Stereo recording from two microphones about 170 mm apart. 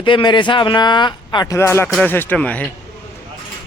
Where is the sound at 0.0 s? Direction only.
30° left (ahead or behind); by 2.6 s 10° left (ahead or behind).